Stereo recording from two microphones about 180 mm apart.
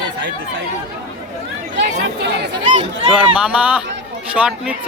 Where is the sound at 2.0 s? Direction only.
70° right (ahead or behind).